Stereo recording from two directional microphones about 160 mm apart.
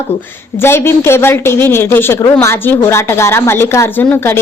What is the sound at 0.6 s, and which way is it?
A woman's voice, 15° left (ahead or behind).